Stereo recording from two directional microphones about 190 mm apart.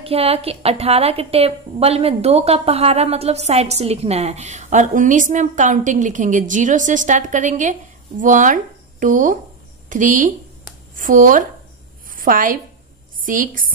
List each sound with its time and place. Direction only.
0.0 s a woman's voice: 30° right (ahead or behind)